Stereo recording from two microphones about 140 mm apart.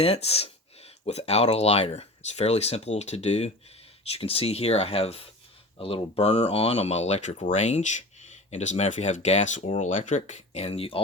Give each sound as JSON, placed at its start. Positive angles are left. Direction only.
{"t": 0.0, "sound": "speech", "side_deg": 45}